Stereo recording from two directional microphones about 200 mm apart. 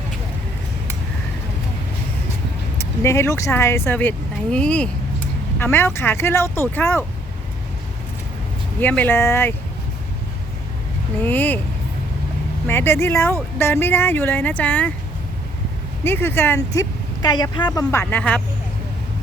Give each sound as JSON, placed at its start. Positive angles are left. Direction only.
{"t": 2.7, "sound": "speech", "side_deg": 15}
{"t": 8.8, "sound": "speech", "side_deg": 10}
{"t": 11.2, "sound": "speech", "side_deg": 10}
{"t": 12.6, "sound": "speech", "side_deg": 10}
{"t": 16.0, "sound": "speech", "side_deg": 10}
{"t": 18.0, "sound": "speech", "side_deg": 5}